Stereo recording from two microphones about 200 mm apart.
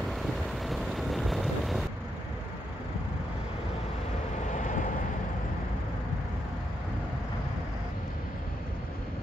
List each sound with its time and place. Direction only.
0.7 s vehicle: centre (ahead or behind)
4.5 s vehicle: 35° left (ahead or behind)